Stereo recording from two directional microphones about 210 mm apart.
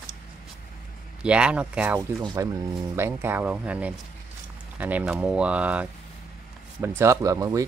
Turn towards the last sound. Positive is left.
turn(degrees=-15)  # may be behind; listen again after turning